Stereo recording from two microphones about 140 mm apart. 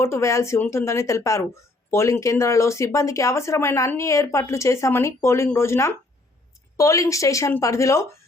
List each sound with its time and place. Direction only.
0.0 s speech: 20° left (ahead or behind)